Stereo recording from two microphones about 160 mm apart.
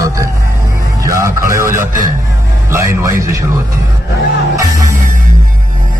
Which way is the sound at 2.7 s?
15° right (ahead or behind).